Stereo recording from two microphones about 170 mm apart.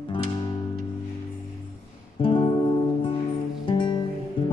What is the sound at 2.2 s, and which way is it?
Music, 30° left (ahead or behind).